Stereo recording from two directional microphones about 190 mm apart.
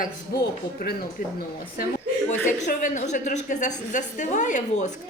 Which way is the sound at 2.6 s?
40° left (ahead or behind).